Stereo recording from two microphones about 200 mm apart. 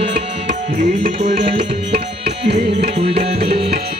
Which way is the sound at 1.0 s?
30° right (ahead or behind).